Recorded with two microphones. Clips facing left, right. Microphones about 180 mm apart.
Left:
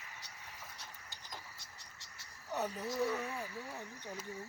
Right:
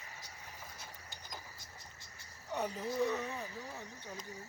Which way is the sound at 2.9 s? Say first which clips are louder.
Right 2 dB; 25° right (ahead or behind).